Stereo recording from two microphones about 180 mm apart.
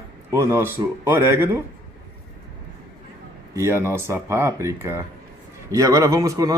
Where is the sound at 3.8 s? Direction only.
15° right (ahead or behind).